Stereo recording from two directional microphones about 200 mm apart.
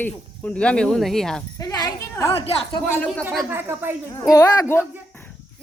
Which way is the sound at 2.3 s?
30° left (ahead or behind).